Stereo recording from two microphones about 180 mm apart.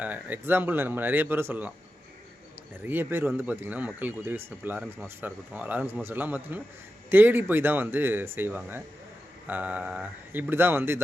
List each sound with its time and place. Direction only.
0.0 s speech: 10° right (ahead or behind)
2.8 s speech: 10° right (ahead or behind)